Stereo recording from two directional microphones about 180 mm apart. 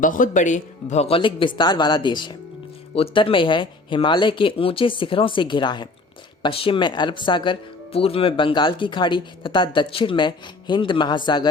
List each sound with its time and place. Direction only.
0.0 s speech: 45° left (ahead or behind); by 11.4 s 25° left (ahead or behind)